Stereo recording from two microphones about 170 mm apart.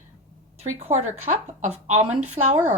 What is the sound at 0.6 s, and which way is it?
Speech, 35° right (ahead or behind).